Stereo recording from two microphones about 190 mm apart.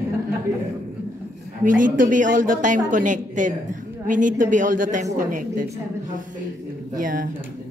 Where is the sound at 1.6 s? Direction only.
45° right (ahead or behind).